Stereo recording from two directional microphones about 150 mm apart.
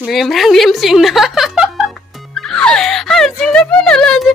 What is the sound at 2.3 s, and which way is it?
Music, 5° left (ahead or behind).